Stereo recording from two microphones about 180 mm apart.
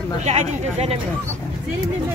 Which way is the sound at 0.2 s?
35° right (ahead or behind).